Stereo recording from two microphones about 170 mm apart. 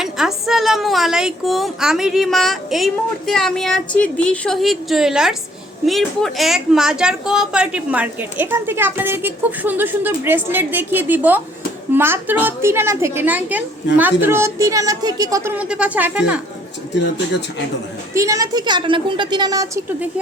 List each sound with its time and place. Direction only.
0.0 s a woman's voice: centre (ahead or behind)
18.1 s a woman's voice: 20° right (ahead or behind)